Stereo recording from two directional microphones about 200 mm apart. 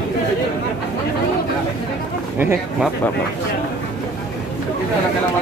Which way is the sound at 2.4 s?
10° right (ahead or behind).